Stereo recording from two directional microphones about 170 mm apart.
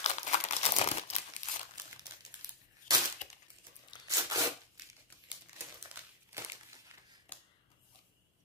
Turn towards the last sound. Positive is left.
turn(degrees=-15)  # may be behind; listen again after turning